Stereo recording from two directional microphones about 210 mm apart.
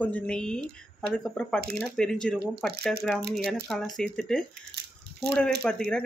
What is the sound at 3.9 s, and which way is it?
Speech, centre (ahead or behind).